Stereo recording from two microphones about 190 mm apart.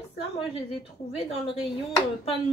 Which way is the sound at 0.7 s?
30° left (ahead or behind).